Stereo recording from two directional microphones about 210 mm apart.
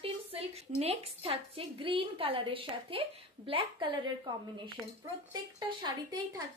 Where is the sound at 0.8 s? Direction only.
30° right (ahead or behind).